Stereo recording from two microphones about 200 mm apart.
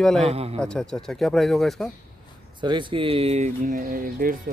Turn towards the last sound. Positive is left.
turn(degrees=-45)  # may be behind; listen again after turning